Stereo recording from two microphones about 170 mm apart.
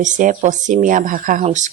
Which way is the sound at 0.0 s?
50° right (ahead or behind).